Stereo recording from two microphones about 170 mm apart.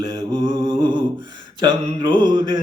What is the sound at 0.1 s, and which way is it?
Mantra, 25° right (ahead or behind).